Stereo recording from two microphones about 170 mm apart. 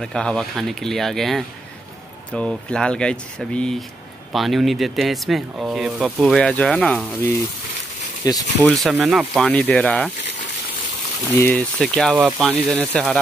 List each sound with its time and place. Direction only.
0.0 s speech: 5° left (ahead or behind)
8.2 s speech: 20° left (ahead or behind)
8.5 s speech: 5° left (ahead or behind)
8.9 s speech: 5° right (ahead or behind)
9.4 s speech: 10° left (ahead or behind)
11.5 s speech: centre (ahead or behind)